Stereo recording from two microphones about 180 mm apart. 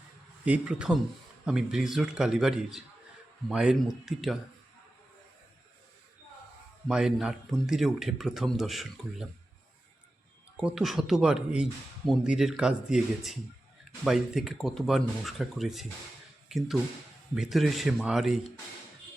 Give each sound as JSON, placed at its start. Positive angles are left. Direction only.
{"t": 0.4, "sound": "speech", "side_deg": -5}
{"t": 6.8, "sound": "speech", "side_deg": -5}
{"t": 10.6, "sound": "speech", "side_deg": -5}